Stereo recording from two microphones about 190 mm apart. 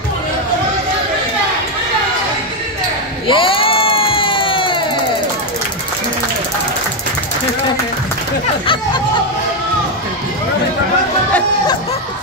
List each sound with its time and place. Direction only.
3.3 s crowd: 25° left (ahead or behind)